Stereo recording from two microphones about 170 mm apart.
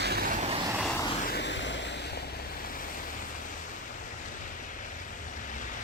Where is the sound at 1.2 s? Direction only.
75° left (ahead or behind); by 1.8 s 90° left.